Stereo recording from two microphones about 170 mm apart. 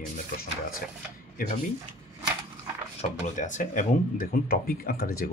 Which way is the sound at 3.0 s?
45° left (ahead or behind).